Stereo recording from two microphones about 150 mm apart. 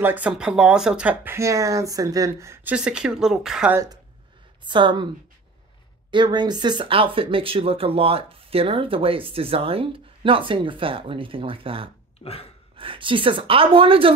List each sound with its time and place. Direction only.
0.0 s speech: 10° right (ahead or behind)
3.7 s speech: 25° right (ahead or behind)
6.1 s speech: 30° right (ahead or behind)
12.2 s a sound: 40° left (ahead or behind)
12.7 s speech: 35° right (ahead or behind)